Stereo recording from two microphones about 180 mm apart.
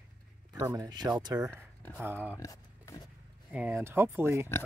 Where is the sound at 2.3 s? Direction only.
20° left (ahead or behind).